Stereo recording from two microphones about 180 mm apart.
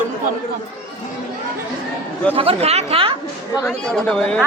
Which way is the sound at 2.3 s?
35° right (ahead or behind).